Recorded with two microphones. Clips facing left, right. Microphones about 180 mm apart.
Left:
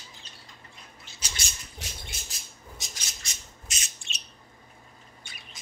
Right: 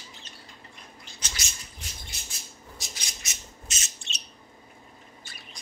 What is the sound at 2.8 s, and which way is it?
Squawk, centre (ahead or behind).